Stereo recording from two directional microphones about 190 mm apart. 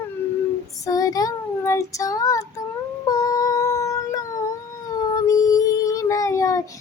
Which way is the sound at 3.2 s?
15° left (ahead or behind).